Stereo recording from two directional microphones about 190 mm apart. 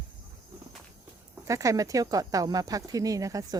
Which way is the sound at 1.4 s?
15° right (ahead or behind).